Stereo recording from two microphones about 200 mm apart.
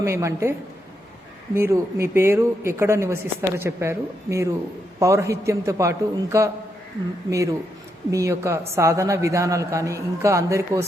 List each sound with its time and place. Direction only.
0.0 s a woman's voice: 15° right (ahead or behind)
1.5 s a woman's voice: 15° right (ahead or behind)